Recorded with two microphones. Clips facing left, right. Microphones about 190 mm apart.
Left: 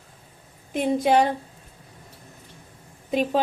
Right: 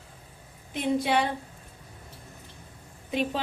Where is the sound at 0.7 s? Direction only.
45° left (ahead or behind).